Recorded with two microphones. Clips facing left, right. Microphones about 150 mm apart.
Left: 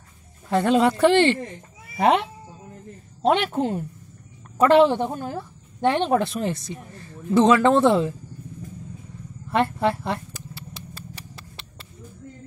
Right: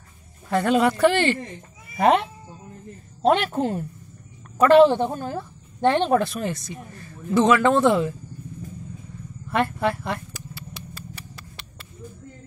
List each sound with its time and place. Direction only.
0.5 s speech: 25° left (ahead or behind)
3.2 s a woman's voice: 15° left (ahead or behind)
4.8 s speech: 10° left (ahead or behind)
6.1 s speech: 25° left (ahead or behind)
9.5 s a sound: 25° left (ahead or behind)